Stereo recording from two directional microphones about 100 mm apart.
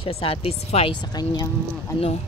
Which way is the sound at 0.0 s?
65° left (ahead or behind).